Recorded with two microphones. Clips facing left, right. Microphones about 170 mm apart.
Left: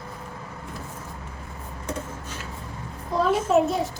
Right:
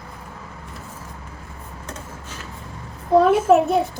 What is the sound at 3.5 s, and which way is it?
Speech, 65° right (ahead or behind).